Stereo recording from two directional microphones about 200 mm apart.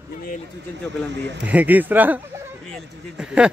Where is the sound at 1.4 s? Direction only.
5° right (ahead or behind).